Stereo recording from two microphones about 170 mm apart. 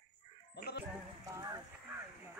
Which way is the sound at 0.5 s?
75° left (ahead or behind).